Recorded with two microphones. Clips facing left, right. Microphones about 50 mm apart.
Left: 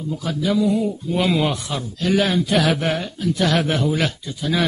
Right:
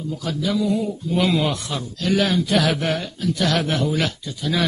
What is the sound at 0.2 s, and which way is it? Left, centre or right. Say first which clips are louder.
Speech: left 3 dB; centre.